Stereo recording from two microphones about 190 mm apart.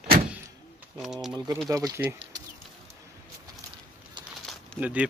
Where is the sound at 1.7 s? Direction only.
15° right (ahead or behind).